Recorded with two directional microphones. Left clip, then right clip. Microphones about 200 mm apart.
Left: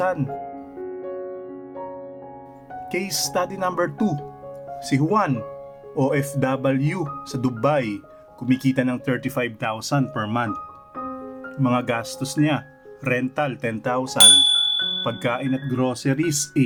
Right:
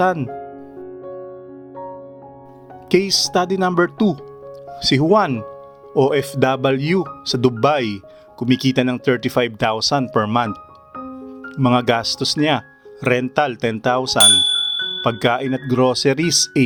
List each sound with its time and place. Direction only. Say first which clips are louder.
0.0 s speech: right 5 dB; 50° right (ahead or behind)
2.9 s speech: right 8 dB; 50° right (ahead or behind)
14.2 s ding: left 1 dB; centre (ahead or behind)
15.0 s speech: right 6 dB; 50° right (ahead or behind)